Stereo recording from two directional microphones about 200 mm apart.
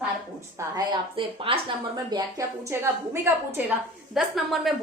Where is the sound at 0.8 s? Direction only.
25° right (ahead or behind).